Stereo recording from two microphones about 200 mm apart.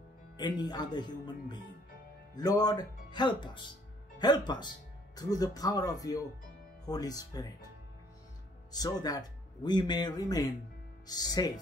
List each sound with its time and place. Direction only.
0.4 s speech: 20° left (ahead or behind)
8.7 s speech: 20° left (ahead or behind)